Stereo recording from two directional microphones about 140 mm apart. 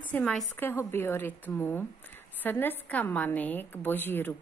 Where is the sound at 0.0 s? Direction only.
10° left (ahead or behind).